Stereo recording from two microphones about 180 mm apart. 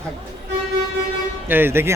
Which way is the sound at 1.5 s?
10° right (ahead or behind).